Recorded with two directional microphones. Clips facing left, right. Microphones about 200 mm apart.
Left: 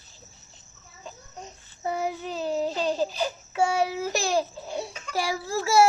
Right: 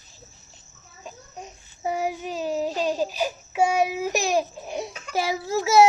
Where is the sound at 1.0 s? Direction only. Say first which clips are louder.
Right 2 dB; 10° right (ahead or behind).